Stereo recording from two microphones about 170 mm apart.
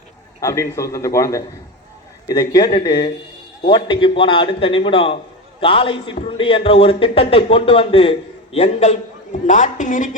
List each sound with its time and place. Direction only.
0.4 s a man's voice: 15° left (ahead or behind); by 10.2 s 50° left (ahead or behind)